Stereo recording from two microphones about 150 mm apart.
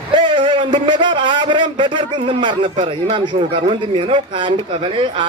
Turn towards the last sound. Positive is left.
turn(degrees=-35)  # may be behind; listen again after turning